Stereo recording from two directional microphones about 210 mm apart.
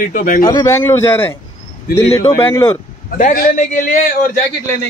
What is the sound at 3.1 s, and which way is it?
Speech, 40° left (ahead or behind).